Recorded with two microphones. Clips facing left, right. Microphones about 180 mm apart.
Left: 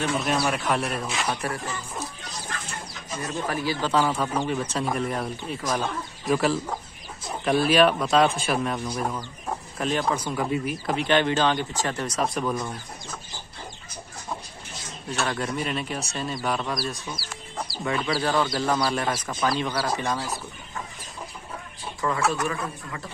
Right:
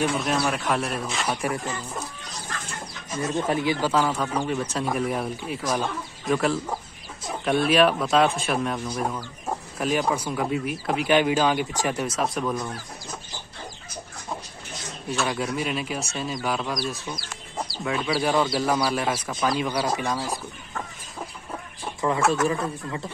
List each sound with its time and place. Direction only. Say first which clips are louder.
0.2 s speech: even; centre (ahead or behind)
1.4 s speech: right 3 dB; 20° right (ahead or behind)
3.2 s speech: right 4 dB; 20° right (ahead or behind)
3.8 s speech: even; centre (ahead or behind)
12.2 s speech: even; centre (ahead or behind)
15.0 s speech: right 1 dB; 5° right (ahead or behind)
22.0 s speech: right 3 dB; 25° right (ahead or behind)